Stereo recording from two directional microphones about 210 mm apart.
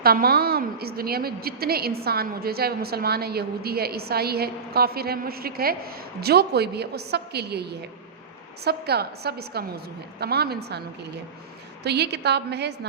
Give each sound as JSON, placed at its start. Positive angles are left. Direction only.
{"t": 0.0, "sound": "a woman's voice", "side_deg": -45}